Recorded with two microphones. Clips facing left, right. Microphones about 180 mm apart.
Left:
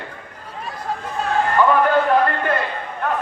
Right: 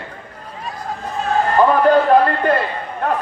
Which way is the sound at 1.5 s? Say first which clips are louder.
Right 4 dB; 35° right (ahead or behind).